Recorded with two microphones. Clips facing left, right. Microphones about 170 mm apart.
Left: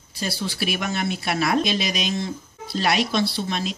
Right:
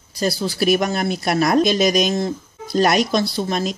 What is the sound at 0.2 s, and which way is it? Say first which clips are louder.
Speech: right 7 dB; 40° right (ahead or behind).